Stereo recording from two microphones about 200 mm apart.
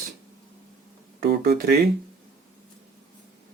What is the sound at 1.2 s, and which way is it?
Speech, 50° right (ahead or behind).